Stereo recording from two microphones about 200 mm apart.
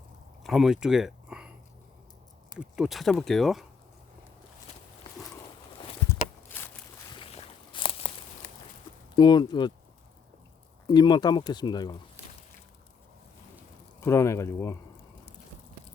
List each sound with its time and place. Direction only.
0.4 s a sound: centre (ahead or behind)
2.6 s speech: 5° right (ahead or behind)
6.1 s walk: 10° left (ahead or behind)
7.1 s a sound: 25° left (ahead or behind)
9.1 s speech: 20° left (ahead or behind)
10.8 s speech: 20° left (ahead or behind)
14.0 s speech: 15° left (ahead or behind)